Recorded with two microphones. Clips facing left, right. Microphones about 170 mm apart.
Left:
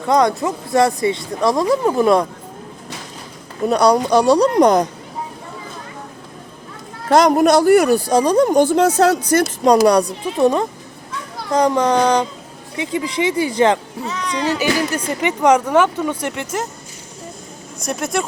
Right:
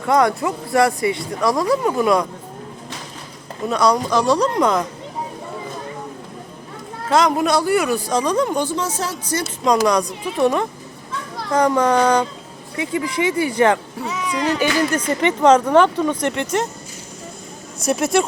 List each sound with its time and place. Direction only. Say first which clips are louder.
0.0 s speech: left 1 dB; 20° left (ahead or behind)
3.7 s speech: left 4 dB; 35° left (ahead or behind)
7.1 s speech: left 5 dB; 40° left (ahead or behind)
8.7 s speech: left 11 dB; 65° left (ahead or behind)
9.4 s speech: left 3 dB; 35° left (ahead or behind); by 13.7 s 20° left (ahead or behind)
14.0 s speech: even; centre (ahead or behind)
17.7 s speech: right 4 dB; 5° right (ahead or behind)